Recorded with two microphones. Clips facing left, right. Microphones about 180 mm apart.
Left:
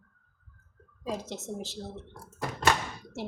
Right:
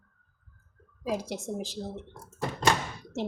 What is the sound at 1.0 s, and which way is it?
A woman's voice, 15° right (ahead or behind).